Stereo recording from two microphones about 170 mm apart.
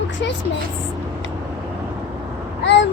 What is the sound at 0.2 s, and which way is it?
Speech, 90° left.